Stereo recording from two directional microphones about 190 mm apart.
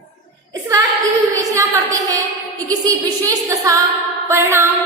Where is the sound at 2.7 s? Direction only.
20° right (ahead or behind).